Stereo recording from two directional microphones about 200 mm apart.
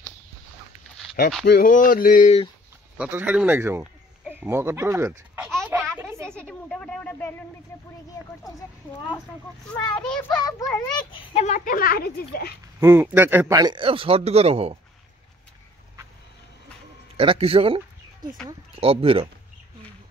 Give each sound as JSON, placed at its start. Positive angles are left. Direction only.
{"t": 1.4, "sound": "speech", "side_deg": 50}
{"t": 3.0, "sound": "speech", "side_deg": -10}
{"t": 5.6, "sound": "a sound", "side_deg": -10}
{"t": 6.2, "sound": "a sound", "side_deg": 5}
{"t": 8.2, "sound": "a child's voice", "side_deg": 15}
{"t": 10.0, "sound": "a child's voice", "side_deg": 5}
{"t": 10.4, "sound": "a child's voice", "side_deg": 20}
{"t": 11.3, "sound": "speech", "side_deg": 35}
{"t": 12.8, "sound": "speech", "side_deg": -10}
{"t": 17.2, "sound": "speech", "side_deg": -30}